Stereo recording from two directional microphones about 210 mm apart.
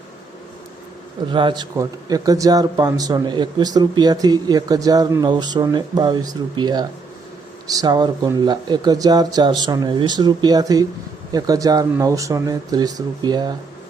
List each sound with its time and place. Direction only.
1.3 s speech: 20° right (ahead or behind)